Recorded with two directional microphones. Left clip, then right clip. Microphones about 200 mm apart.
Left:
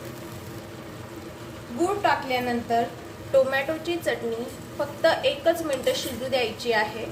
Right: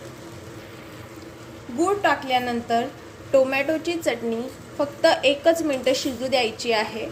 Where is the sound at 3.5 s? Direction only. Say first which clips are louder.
Right 3 dB; 35° right (ahead or behind).